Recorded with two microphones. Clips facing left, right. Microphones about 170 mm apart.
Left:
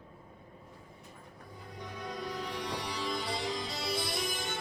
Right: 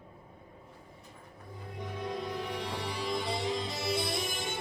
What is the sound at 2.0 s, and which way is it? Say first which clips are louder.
Music: right 3 dB; 20° right (ahead or behind).